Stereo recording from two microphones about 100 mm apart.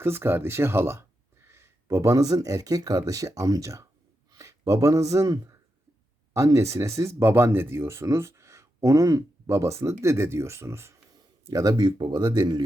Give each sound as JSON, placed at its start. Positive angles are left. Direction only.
{"t": 0.0, "sound": "speech", "side_deg": -25}
{"t": 11.4, "sound": "speech", "side_deg": -35}